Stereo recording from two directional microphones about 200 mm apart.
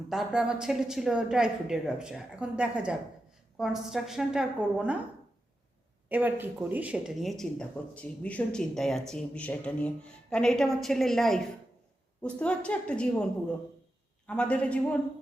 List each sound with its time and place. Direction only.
0.1 s speech: centre (ahead or behind)
6.1 s speech: 10° right (ahead or behind)
14.3 s speech: 5° left (ahead or behind)